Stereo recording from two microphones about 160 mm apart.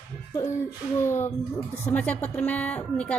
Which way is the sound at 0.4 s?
20° left (ahead or behind).